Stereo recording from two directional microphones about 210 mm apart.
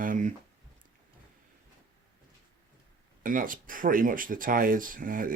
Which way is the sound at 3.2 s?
40° right (ahead or behind).